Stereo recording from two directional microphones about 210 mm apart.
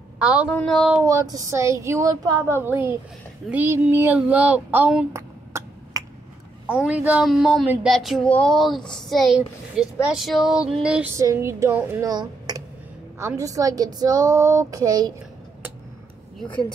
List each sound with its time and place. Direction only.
0.2 s a woman's voice: 5° right (ahead or behind)
1.3 s a woman's voice: 15° right (ahead or behind)
16.3 s speech: 5° left (ahead or behind)